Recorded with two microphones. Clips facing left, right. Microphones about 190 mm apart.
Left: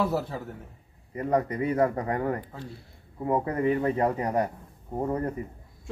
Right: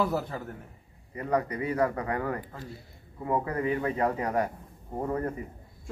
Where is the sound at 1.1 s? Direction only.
45° left (ahead or behind).